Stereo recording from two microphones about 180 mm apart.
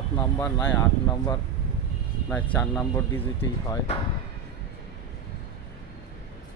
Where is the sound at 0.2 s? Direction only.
15° left (ahead or behind).